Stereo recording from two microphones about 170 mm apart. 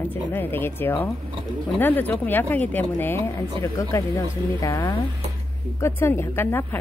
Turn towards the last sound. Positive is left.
turn(degrees=15)  # may be behind; listen again after turning